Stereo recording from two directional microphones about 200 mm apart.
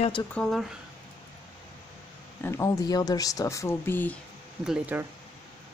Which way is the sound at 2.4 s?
15° left (ahead or behind).